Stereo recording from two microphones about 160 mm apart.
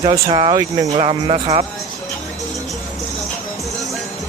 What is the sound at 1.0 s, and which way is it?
Speech, 35° right (ahead or behind).